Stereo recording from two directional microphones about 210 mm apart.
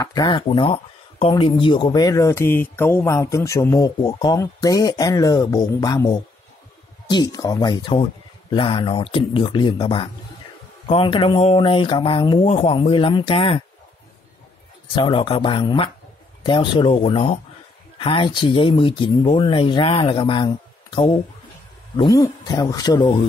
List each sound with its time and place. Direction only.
0.0 s speech: 20° left (ahead or behind)
15.0 s speech: 25° left (ahead or behind)